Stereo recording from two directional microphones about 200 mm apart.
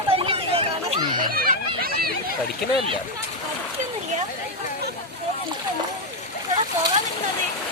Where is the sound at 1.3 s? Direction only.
45° right (ahead or behind).